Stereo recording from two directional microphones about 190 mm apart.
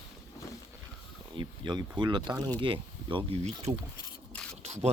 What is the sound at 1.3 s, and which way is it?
Speech, 25° right (ahead or behind).